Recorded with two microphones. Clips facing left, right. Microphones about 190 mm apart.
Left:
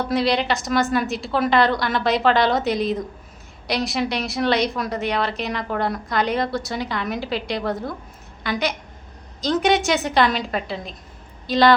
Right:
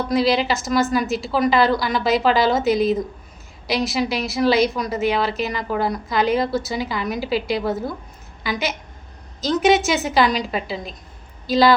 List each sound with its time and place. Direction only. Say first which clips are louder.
0.1 s a woman's voice: right 3 dB; centre (ahead or behind)